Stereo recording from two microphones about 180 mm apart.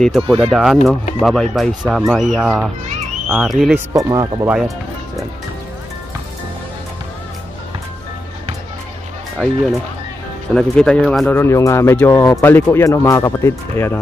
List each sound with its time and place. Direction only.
0.0 s speech: centre (ahead or behind)
3.9 s speech: 20° right (ahead or behind)
4.5 s speech: centre (ahead or behind)
9.4 s speech: 5° left (ahead or behind)